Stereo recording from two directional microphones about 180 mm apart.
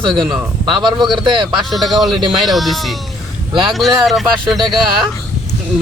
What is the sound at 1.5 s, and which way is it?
Speech, centre (ahead or behind).